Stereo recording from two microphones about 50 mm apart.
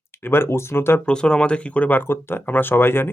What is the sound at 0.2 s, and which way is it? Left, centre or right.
Speech, left.